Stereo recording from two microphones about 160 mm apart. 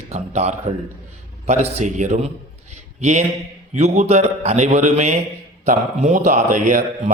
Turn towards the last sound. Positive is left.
turn(degrees=-55)  # may be behind; listen again after turning